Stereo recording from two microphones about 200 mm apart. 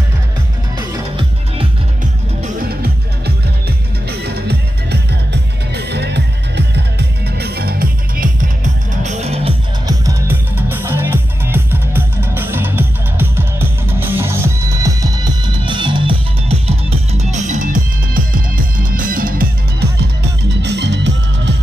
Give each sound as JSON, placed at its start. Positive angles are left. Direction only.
{"t": 0.7, "sound": "music", "side_deg": -20}
{"t": 2.4, "sound": "music", "side_deg": -50}
{"t": 9.0, "sound": "music", "side_deg": -35}
{"t": 9.8, "sound": "music", "side_deg": -15}
{"t": 20.6, "sound": "music", "side_deg": -60}